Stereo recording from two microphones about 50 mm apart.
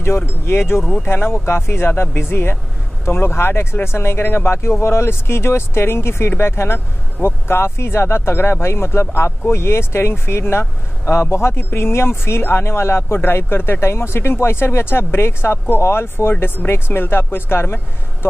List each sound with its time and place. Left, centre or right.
0.0 s speech: left